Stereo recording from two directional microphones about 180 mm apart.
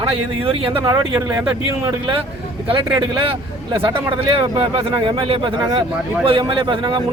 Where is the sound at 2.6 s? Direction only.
30° right (ahead or behind).